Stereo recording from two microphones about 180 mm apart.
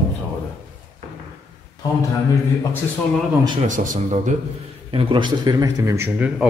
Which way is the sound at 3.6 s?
45° right (ahead or behind).